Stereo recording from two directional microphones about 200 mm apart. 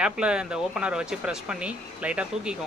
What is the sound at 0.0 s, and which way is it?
A man's voice, 5° right (ahead or behind).